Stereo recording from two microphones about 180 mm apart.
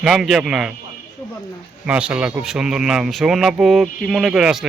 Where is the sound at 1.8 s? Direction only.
5° right (ahead or behind).